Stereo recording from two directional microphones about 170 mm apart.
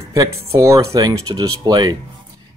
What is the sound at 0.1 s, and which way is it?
Speech, 20° right (ahead or behind).